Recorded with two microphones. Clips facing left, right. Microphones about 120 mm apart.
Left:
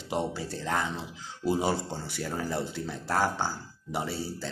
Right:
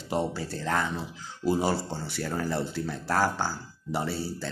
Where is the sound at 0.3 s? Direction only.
20° left (ahead or behind).